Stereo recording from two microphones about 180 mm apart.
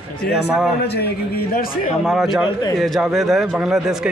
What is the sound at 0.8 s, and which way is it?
Speech, 65° left (ahead or behind).